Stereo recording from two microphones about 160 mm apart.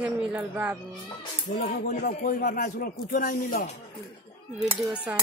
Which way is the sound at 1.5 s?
60° left (ahead or behind).